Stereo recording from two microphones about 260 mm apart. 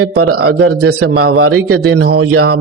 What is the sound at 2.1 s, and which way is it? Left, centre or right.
Speech, right.